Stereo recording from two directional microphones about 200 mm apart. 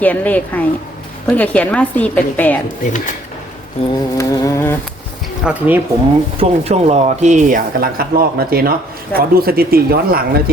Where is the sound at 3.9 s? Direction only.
15° left (ahead or behind).